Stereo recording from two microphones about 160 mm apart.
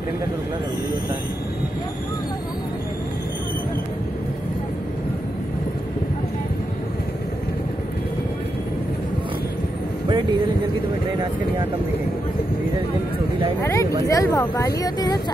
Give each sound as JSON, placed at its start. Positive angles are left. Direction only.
{"t": 13.6, "sound": "speech", "side_deg": 15}